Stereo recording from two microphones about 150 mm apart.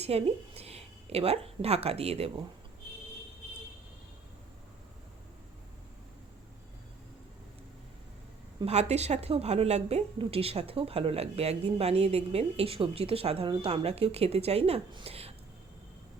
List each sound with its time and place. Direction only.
0.0 s a woman's voice: 45° right (ahead or behind)
8.6 s a woman's voice: 45° right (ahead or behind)